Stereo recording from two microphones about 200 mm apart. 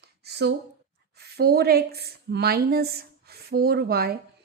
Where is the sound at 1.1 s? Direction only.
55° right (ahead or behind).